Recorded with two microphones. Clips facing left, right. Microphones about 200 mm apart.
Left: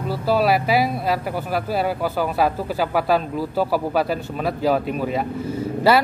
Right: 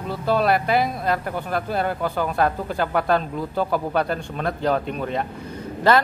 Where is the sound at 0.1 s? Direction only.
5° left (ahead or behind).